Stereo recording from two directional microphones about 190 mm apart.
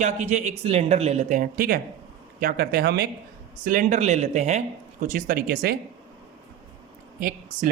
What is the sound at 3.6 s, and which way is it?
Speech, 45° right (ahead or behind).